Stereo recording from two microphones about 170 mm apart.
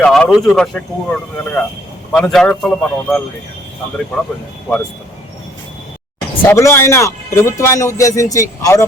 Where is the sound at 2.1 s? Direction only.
5° left (ahead or behind).